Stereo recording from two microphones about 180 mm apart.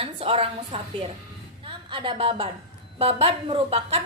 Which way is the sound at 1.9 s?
30° right (ahead or behind).